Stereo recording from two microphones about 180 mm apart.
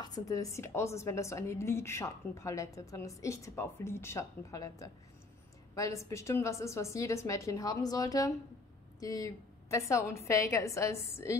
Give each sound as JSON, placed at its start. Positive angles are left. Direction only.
{"t": 0.0, "sound": "a woman's voice", "side_deg": 20}